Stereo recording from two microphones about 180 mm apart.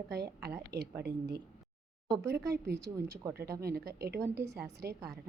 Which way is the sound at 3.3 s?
60° right (ahead or behind).